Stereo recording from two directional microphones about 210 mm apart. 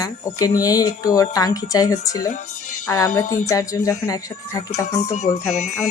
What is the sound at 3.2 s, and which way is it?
Speech, 40° left (ahead or behind).